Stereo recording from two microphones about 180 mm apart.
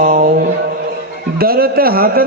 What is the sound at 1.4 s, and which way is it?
Speech, 55° right (ahead or behind).